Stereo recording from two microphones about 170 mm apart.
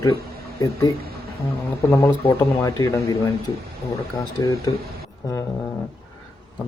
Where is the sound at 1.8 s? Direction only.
15° left (ahead or behind).